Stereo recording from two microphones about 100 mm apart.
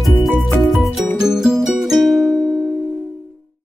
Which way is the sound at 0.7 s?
5° right (ahead or behind).